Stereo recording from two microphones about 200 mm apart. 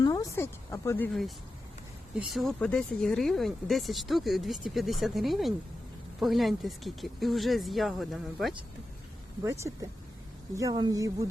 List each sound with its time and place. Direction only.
0.0 s speech: 15° left (ahead or behind); by 8.5 s centre (ahead or behind)
9.4 s speech: 15° right (ahead or behind)